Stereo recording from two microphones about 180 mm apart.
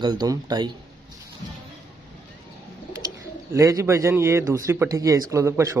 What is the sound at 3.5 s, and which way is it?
A man's voice, 15° right (ahead or behind).